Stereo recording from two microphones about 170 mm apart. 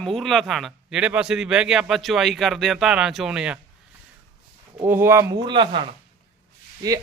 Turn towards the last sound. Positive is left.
turn(degrees=-20)  # may be behind; listen again after turning